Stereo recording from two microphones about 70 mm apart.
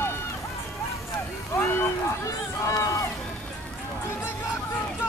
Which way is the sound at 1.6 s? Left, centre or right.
Left.